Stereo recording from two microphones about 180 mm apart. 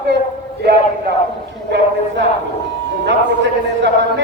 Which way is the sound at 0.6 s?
65° right (ahead or behind).